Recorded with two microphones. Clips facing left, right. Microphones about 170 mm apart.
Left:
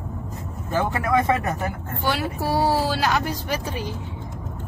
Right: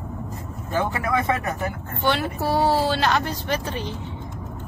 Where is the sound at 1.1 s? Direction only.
40° left (ahead or behind).